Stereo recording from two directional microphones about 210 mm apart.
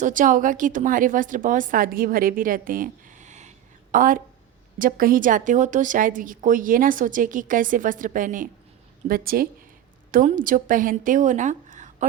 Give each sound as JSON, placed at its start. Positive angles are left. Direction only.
{"t": 0.0, "sound": "a woman's voice", "side_deg": -40}